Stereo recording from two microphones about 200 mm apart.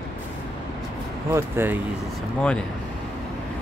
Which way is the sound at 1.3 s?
10° right (ahead or behind).